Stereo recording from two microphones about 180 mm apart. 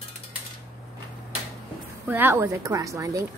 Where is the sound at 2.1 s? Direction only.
10° right (ahead or behind).